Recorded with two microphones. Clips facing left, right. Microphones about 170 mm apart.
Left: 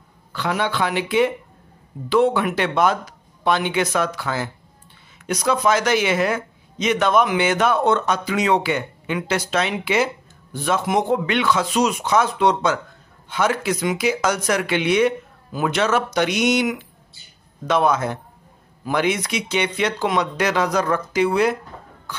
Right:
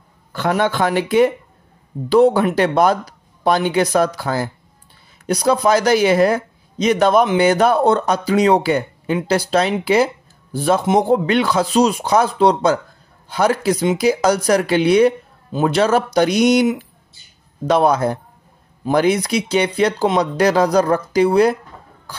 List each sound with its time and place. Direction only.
0.3 s speech: 45° right (ahead or behind)